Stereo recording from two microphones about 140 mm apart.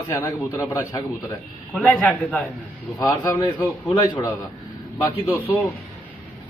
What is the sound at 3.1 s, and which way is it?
A man's voice, 30° left (ahead or behind).